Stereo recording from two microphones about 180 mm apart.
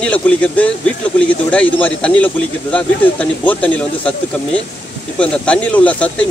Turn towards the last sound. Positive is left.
turn(degrees=5)  # may be behind; listen again after turning